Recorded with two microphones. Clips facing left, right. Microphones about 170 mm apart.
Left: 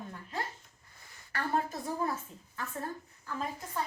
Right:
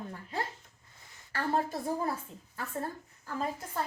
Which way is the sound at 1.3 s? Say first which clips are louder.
Right 2 dB; 30° right (ahead or behind).